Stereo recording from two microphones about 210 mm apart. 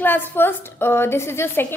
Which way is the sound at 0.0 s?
10° left (ahead or behind).